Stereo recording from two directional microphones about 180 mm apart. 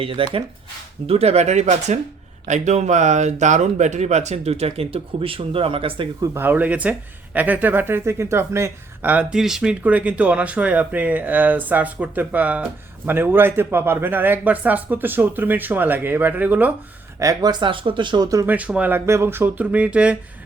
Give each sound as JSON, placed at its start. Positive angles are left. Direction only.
{"t": 0.0, "sound": "speech", "side_deg": -30}
{"t": 6.3, "sound": "speech", "side_deg": -10}
{"t": 17.2, "sound": "speech", "side_deg": -20}